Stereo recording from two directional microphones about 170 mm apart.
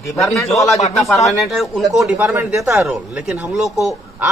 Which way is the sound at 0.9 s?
Centre (ahead or behind).